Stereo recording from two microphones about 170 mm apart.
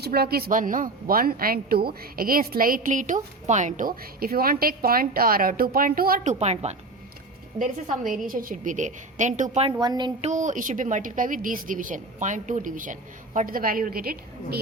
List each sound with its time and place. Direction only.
0.0 s a woman's voice: 65° right (ahead or behind)
6.2 s a woman's voice: 40° right (ahead or behind)
7.6 s a woman's voice: 55° right (ahead or behind)
9.8 s speech: 25° right (ahead or behind)
10.2 s a woman's voice: 45° right (ahead or behind); by 14.6 s 65° right (ahead or behind)